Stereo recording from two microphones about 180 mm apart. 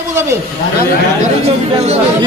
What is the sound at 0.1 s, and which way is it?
Speech, 15° right (ahead or behind).